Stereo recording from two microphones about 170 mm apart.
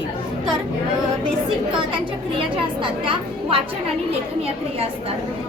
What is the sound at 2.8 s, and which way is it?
Speech, 30° right (ahead or behind).